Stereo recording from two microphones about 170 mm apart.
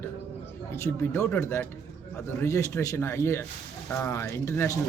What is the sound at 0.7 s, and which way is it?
Speech, 15° left (ahead or behind).